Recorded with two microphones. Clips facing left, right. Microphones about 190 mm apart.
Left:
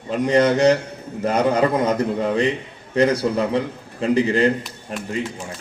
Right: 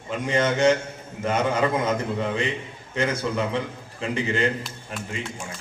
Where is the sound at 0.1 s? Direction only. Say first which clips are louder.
Left 7 dB; 35° left (ahead or behind).